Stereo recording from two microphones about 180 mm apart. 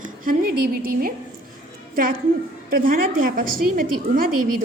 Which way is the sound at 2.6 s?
50° right (ahead or behind).